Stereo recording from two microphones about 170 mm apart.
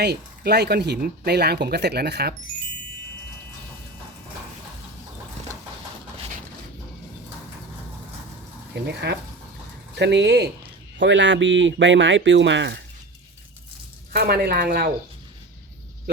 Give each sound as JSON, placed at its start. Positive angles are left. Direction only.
{"t": 0.0, "sound": "speech", "side_deg": -75}
{"t": 8.7, "sound": "speech", "side_deg": -85}
{"t": 14.1, "sound": "speech", "side_deg": -70}